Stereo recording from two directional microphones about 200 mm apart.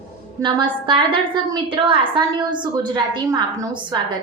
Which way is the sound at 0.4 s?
25° right (ahead or behind).